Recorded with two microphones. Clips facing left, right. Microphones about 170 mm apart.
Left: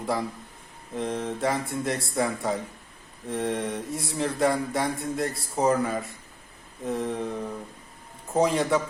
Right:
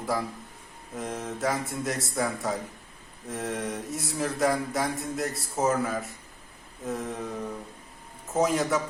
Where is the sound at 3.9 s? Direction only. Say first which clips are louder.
Left 1 dB; 30° left (ahead or behind).